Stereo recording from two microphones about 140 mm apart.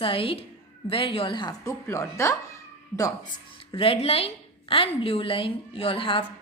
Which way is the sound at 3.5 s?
40° left (ahead or behind).